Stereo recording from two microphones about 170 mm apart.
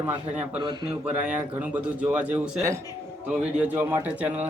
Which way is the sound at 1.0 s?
10° right (ahead or behind).